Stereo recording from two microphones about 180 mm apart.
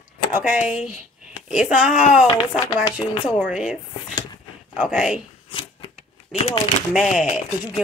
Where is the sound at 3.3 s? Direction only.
5° right (ahead or behind).